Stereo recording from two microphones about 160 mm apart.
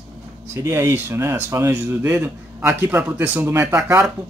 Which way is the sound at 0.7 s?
15° right (ahead or behind).